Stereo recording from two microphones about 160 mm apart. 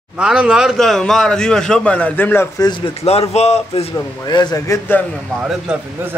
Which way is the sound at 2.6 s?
30° left (ahead or behind).